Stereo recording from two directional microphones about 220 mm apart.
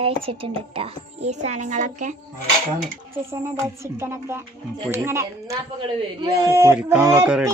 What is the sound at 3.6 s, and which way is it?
A man's voice, 10° right (ahead or behind).